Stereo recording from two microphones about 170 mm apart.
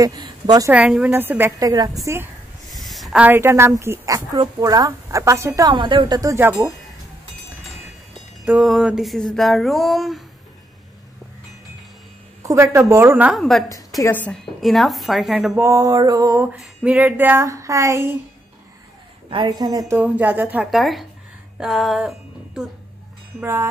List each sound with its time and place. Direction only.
0.0 s a woman's voice: 25° right (ahead or behind)
0.7 s a woman's voice: 5° right (ahead or behind)
2.7 s a woman's voice: centre (ahead or behind); by 5.7 s 15° right (ahead or behind)
5.7 s speech: 30° right (ahead or behind)
8.5 s a woman's voice: 5° right (ahead or behind)
12.4 s a woman's voice: 15° right (ahead or behind); by 13.7 s centre (ahead or behind)
13.7 s a woman's voice: 20° left (ahead or behind); by 15.6 s centre (ahead or behind)
15.6 s speech: 20° right (ahead or behind)
16.4 s a woman's voice: 5° right (ahead or behind)
19.3 s speech: 25° right (ahead or behind)
19.9 s a woman's voice: 10° right (ahead or behind)
23.4 s a woman's voice: 15° right (ahead or behind)